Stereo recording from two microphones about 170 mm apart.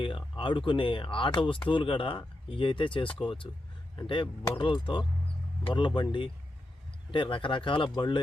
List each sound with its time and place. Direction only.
0.0 s speech: 30° left (ahead or behind)